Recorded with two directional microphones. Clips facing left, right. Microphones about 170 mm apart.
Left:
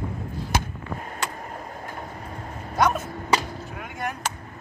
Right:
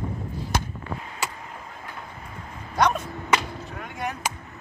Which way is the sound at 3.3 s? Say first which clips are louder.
Even; 35° left (ahead or behind).